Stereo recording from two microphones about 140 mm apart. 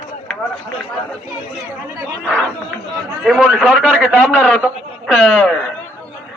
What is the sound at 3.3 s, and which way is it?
Speech, 5° right (ahead or behind).